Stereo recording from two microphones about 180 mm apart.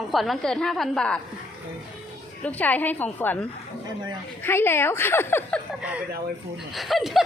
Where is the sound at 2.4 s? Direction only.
10° left (ahead or behind).